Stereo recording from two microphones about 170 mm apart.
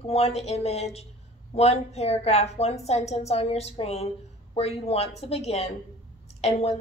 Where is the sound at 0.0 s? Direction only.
35° left (ahead or behind).